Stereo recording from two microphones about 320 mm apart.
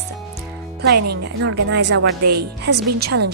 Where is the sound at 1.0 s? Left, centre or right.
Right.